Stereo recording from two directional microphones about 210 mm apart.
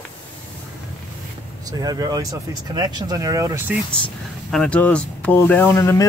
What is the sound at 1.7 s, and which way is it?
Speech, 20° right (ahead or behind).